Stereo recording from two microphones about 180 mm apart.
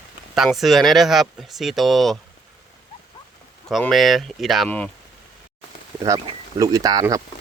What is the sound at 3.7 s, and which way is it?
Speech, centre (ahead or behind).